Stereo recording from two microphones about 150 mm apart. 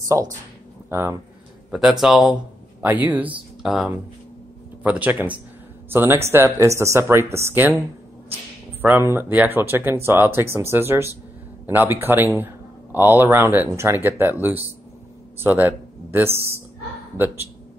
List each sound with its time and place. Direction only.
0.1 s speech: 20° right (ahead or behind)
1.7 s speech: centre (ahead or behind)
8.8 s speech: 15° right (ahead or behind)